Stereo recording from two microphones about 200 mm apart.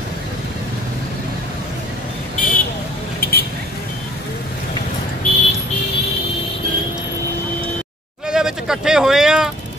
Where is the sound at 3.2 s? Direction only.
50° left (ahead or behind).